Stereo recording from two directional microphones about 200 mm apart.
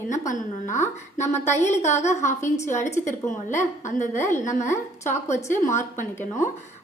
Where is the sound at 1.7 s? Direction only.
35° left (ahead or behind).